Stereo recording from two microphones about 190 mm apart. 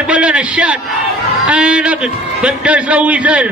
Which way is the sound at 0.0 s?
5° right (ahead or behind).